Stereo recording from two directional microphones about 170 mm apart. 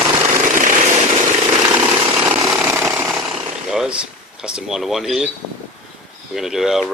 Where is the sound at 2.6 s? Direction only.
15° right (ahead or behind).